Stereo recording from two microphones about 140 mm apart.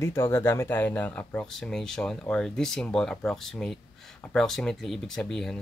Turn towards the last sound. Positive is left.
turn(degrees=5)  # may be behind; listen again after turning